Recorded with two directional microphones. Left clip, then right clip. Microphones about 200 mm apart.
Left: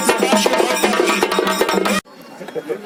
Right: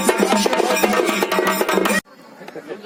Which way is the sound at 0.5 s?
45° right (ahead or behind).